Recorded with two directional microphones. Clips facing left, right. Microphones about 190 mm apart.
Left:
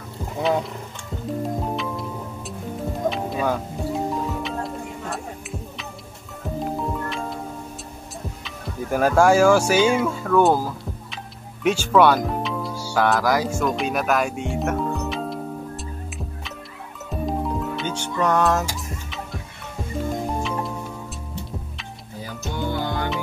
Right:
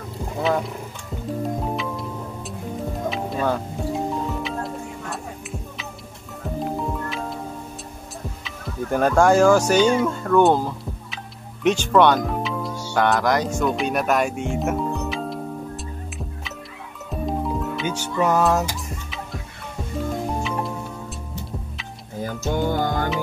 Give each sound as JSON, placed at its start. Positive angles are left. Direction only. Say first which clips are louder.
{"t": 1.4, "sound": "music", "louder": "right 1 dB", "side_deg": 0}
{"t": 8.5, "sound": "speech", "louder": "right 1 dB", "side_deg": 5}
{"t": 13.7, "sound": "music", "louder": "right 2 dB", "side_deg": 0}
{"t": 17.1, "sound": "music", "louder": "even", "side_deg": 0}
{"t": 22.2, "sound": "music", "louder": "right 5 dB", "side_deg": -50}